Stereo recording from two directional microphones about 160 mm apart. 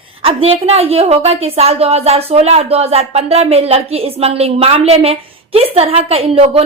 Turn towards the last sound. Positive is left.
turn(degrees=-40)  # may be behind; listen again after turning